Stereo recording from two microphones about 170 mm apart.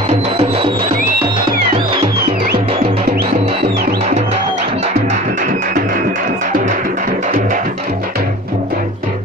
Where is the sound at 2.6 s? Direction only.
35° right (ahead or behind).